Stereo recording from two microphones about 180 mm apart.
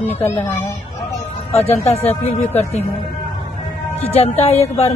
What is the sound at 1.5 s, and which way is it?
Speech, 35° left (ahead or behind).